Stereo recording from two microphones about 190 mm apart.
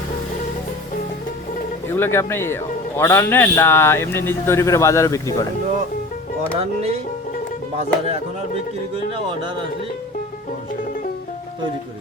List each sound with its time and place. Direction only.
1.9 s speech: 10° left (ahead or behind)
6.6 s music: 30° right (ahead or behind)